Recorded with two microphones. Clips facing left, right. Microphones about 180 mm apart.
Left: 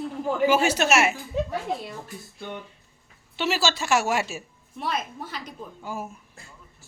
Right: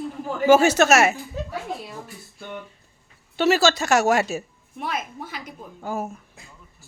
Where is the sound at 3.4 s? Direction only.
45° right (ahead or behind).